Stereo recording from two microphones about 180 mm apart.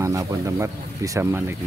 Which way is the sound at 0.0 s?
20° right (ahead or behind).